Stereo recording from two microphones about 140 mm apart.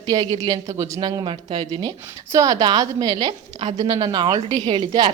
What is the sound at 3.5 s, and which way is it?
Speech, 55° right (ahead or behind).